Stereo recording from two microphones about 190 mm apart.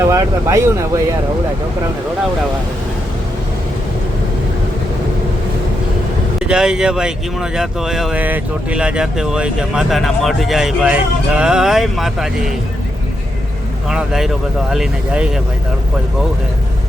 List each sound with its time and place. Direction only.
0.0 s speech: 15° right (ahead or behind)
6.4 s speech: 5° right (ahead or behind)
13.9 s speech: 5° right (ahead or behind)